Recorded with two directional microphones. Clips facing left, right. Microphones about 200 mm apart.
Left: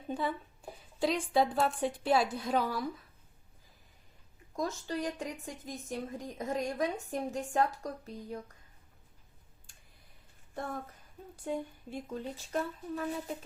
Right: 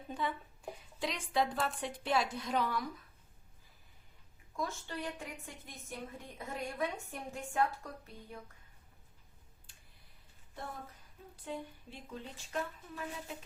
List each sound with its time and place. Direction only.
0.1 s speech: 35° left (ahead or behind)
4.5 s speech: 40° left (ahead or behind)
11.4 s speech: 45° left (ahead or behind)